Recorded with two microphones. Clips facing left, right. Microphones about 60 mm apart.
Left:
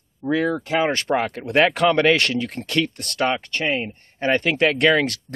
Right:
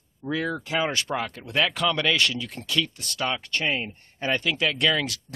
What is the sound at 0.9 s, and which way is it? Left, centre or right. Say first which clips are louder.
Speech: left 7 dB; left.